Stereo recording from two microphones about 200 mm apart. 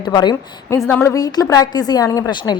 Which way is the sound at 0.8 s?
10° left (ahead or behind).